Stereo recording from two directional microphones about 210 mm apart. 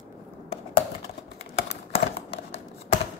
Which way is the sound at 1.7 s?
30° left (ahead or behind).